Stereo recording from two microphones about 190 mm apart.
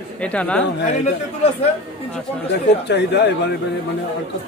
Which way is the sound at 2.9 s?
65° left (ahead or behind).